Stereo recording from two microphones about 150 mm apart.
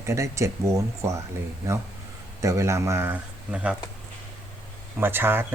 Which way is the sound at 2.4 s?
20° right (ahead or behind).